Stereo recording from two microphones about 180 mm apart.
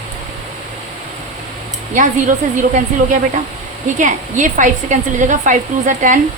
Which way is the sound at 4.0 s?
45° right (ahead or behind).